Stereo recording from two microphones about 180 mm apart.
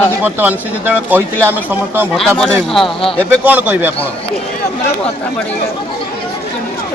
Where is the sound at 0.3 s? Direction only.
10° right (ahead or behind).